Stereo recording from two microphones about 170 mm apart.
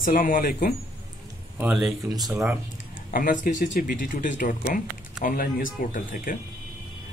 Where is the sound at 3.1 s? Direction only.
55° left (ahead or behind).